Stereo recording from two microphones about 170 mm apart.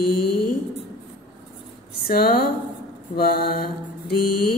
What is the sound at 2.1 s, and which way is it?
Mantra, 65° left (ahead or behind).